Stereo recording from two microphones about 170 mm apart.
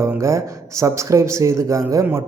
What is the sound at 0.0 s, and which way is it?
Speech, 15° right (ahead or behind).